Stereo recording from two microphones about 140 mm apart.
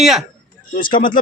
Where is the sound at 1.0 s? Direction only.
75° left (ahead or behind).